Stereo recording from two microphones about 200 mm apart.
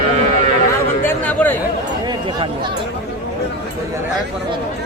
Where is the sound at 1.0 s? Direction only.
10° left (ahead or behind).